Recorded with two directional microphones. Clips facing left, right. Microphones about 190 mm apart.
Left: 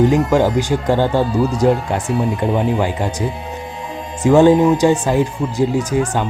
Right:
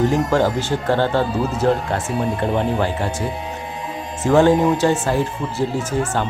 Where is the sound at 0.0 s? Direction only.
15° left (ahead or behind).